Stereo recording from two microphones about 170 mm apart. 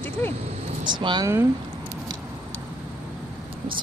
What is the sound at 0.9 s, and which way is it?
Speech, 25° right (ahead or behind).